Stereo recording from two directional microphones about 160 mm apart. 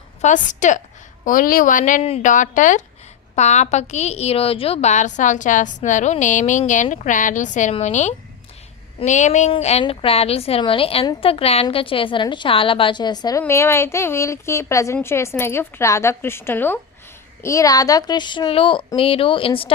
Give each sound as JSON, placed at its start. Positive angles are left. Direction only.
{"t": 0.2, "sound": "a woman's voice", "side_deg": 50}